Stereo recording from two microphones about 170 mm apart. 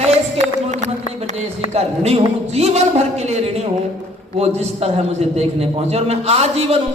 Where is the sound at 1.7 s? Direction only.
40° right (ahead or behind).